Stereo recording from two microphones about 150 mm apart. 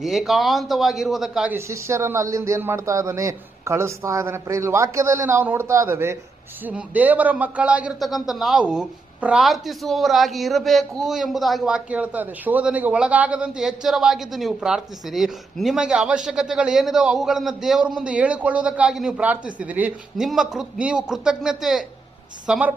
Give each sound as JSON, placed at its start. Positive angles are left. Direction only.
{"t": 0.0, "sound": "a man's voice", "side_deg": 0}
{"t": 1.5, "sound": "a man's voice", "side_deg": -20}